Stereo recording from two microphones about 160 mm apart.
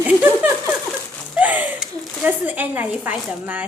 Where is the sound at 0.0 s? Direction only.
10° right (ahead or behind).